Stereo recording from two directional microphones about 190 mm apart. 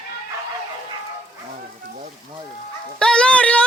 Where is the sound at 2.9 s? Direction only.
5° left (ahead or behind).